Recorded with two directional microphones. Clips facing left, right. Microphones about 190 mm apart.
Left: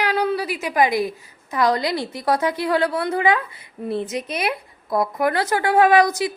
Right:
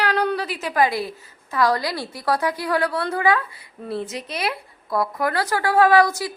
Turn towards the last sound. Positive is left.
turn(degrees=20)  # may be behind; listen again after turning